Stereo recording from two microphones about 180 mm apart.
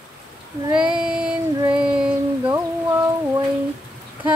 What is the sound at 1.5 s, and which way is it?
Female singing, 25° right (ahead or behind).